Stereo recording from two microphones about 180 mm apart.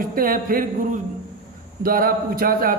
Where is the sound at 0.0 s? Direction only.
50° right (ahead or behind).